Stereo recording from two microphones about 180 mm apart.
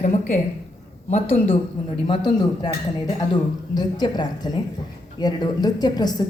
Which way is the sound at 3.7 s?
20° left (ahead or behind).